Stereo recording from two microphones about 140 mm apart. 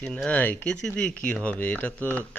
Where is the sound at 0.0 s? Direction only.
5° left (ahead or behind).